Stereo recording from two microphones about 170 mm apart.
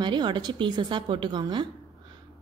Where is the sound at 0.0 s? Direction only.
25° right (ahead or behind).